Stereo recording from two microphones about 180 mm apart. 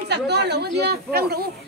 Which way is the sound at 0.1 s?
70° right (ahead or behind).